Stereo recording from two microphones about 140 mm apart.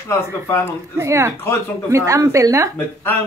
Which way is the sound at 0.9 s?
20° right (ahead or behind).